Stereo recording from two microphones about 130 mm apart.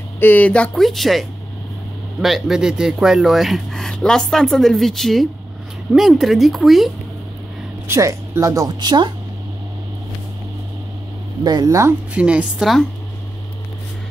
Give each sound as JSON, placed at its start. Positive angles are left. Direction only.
{"t": 0.2, "sound": "speech", "side_deg": 15}
{"t": 2.2, "sound": "speech", "side_deg": 0}
{"t": 7.9, "sound": "speech", "side_deg": -25}
{"t": 11.4, "sound": "speech", "side_deg": -30}
{"t": 12.1, "sound": "a woman's voice", "side_deg": -10}